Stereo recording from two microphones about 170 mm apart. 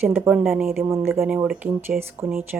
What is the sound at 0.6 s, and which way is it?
Speech, 15° right (ahead or behind).